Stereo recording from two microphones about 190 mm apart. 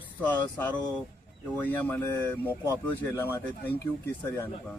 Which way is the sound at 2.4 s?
10° right (ahead or behind).